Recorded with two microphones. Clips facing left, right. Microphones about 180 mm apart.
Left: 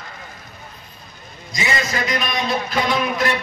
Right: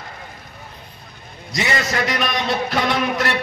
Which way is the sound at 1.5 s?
70° right (ahead or behind).